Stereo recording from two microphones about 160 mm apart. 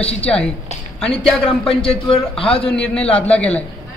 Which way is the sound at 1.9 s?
35° left (ahead or behind).